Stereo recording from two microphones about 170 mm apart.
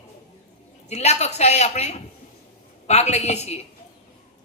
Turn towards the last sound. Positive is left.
turn(degrees=40)  # may be behind; listen again after turning